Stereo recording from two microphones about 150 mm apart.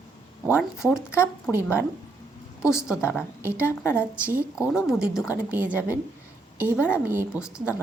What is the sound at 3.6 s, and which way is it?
Speech, 15° left (ahead or behind).